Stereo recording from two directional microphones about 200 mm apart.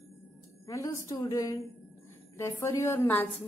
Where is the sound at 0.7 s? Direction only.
15° left (ahead or behind).